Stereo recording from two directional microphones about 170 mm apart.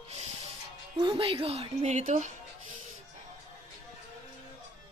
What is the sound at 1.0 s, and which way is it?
A woman's voice, 35° right (ahead or behind).